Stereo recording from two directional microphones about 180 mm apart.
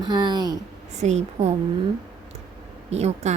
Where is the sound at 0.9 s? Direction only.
40° right (ahead or behind).